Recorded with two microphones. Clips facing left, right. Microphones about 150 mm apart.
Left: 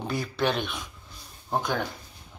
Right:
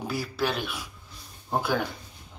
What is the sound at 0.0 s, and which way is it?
Speech, 5° right (ahead or behind).